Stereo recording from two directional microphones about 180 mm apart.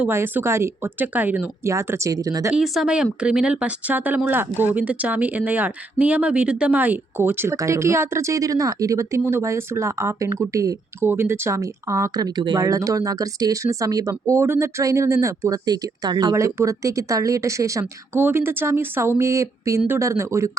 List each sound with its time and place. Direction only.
0.0 s speech: 10° right (ahead or behind)
2.5 s speech: 5° right (ahead or behind)